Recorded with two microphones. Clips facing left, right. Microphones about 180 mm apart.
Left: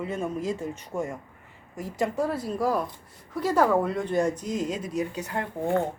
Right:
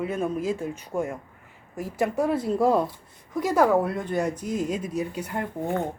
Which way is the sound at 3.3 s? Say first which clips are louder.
Right 2 dB; 10° right (ahead or behind).